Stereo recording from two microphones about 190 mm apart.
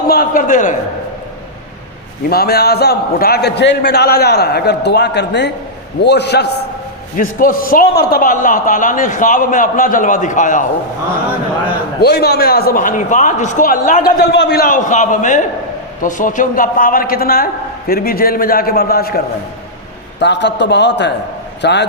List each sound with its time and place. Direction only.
0.1 s a man's voice: 45° left (ahead or behind)
2.3 s a man's voice: 55° left (ahead or behind)
7.2 s a man's voice: 45° left (ahead or behind)
11.9 s a man's voice: 55° left (ahead or behind)
14.2 s a man's voice: 60° left (ahead or behind)
20.1 s a man's voice: 65° left (ahead or behind)